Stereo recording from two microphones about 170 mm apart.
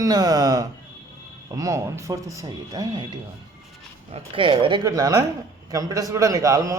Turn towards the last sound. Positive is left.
turn(degrees=-20)  # may be behind; listen again after turning